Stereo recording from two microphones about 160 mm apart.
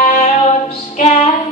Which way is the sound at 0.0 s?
45° left (ahead or behind).